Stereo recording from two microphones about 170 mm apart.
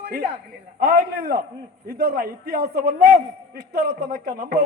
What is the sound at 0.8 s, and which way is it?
A man's voice, 60° right (ahead or behind).